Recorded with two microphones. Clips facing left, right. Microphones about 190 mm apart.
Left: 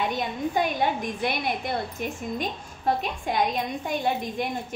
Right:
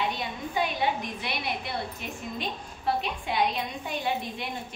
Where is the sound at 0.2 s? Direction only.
50° left (ahead or behind).